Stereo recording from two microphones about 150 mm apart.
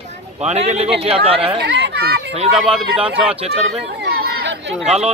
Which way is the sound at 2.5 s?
5° right (ahead or behind).